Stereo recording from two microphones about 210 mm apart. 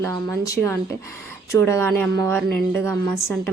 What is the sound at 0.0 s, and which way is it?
A woman's voice, 15° left (ahead or behind).